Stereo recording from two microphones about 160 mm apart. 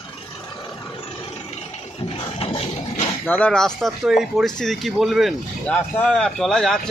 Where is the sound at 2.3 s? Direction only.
35° left (ahead or behind).